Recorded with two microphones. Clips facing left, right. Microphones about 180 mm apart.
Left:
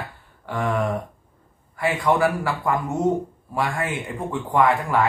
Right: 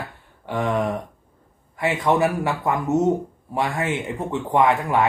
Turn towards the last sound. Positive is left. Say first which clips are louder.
# right 1 dB
turn(degrees=-20)  # may be behind; listen again after turning